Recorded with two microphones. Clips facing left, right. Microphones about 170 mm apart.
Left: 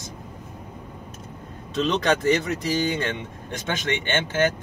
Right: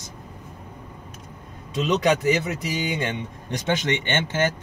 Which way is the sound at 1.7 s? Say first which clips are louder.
Right 1 dB; 10° right (ahead or behind).